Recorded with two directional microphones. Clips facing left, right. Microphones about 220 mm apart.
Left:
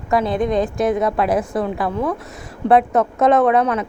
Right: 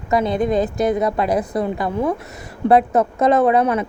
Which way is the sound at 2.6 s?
Centre (ahead or behind).